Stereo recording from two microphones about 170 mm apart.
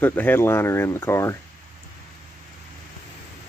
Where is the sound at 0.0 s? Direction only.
10° left (ahead or behind).